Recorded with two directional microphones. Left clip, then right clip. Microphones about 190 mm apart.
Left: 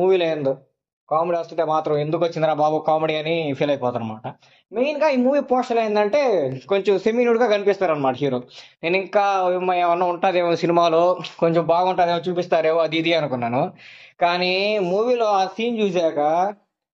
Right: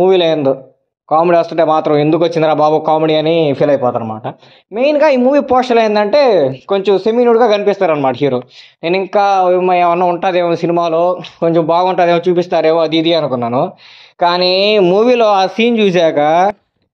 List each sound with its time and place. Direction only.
0.0 s speech: 30° right (ahead or behind)
1.0 s a man's voice: 50° right (ahead or behind)
4.7 s speech: 40° right (ahead or behind)
8.8 s speech: 25° right (ahead or behind)
9.8 s a man's voice: 40° right (ahead or behind)